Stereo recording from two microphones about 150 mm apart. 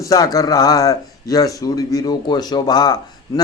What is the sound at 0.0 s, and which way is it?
Speech, 25° left (ahead or behind).